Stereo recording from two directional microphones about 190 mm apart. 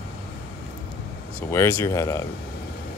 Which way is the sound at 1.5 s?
15° left (ahead or behind).